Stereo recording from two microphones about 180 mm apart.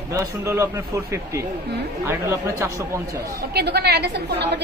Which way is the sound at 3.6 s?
65° right (ahead or behind).